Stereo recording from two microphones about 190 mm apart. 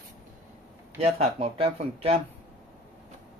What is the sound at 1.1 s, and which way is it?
Speech, 30° right (ahead or behind).